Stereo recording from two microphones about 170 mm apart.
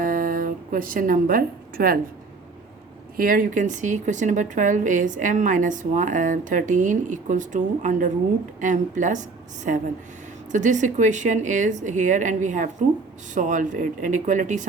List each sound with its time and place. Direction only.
0.0 s a sound: 55° right (ahead or behind)
3.2 s a woman's voice: 55° right (ahead or behind)
10.5 s a woman's voice: 45° right (ahead or behind)